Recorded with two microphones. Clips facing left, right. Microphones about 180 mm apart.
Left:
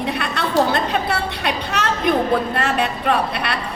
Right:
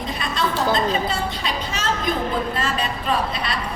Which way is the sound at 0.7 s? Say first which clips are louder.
Left 1 dB; 65° left (ahead or behind).